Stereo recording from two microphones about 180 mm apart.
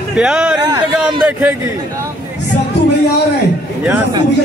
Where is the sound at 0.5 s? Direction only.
25° right (ahead or behind).